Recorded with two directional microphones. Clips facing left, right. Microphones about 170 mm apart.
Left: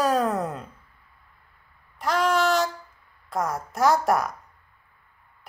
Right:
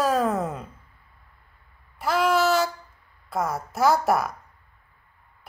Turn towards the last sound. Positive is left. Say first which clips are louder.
# even
turn(degrees=0)  # may be behind; listen again after turning